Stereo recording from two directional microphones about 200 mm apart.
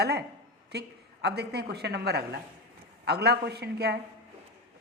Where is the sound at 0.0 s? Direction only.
55° right (ahead or behind).